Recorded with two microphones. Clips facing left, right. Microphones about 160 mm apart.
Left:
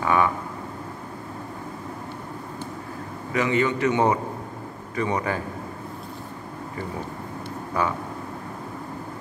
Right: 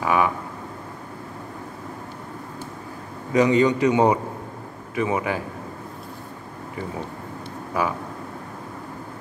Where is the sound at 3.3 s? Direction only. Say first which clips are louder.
Right 5 dB; 20° right (ahead or behind).